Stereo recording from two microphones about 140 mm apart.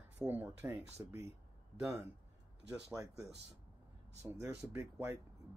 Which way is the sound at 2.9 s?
25° right (ahead or behind).